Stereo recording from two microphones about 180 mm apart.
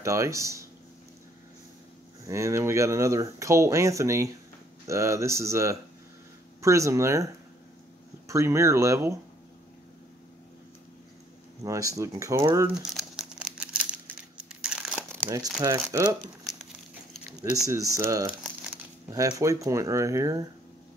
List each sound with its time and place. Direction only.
0.0 s speech: 15° right (ahead or behind)
2.2 s speech: 15° right (ahead or behind)
8.3 s speech: 15° right (ahead or behind)
11.6 s speech: 20° right (ahead or behind)
12.9 s crumpling: centre (ahead or behind)
15.9 s speech: 15° right (ahead or behind)
17.3 s a sound: 20° right (ahead or behind)
17.6 s speech: 20° right (ahead or behind)